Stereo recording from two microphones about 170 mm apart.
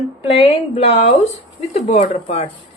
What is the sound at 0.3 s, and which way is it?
A woman's voice, 35° left (ahead or behind).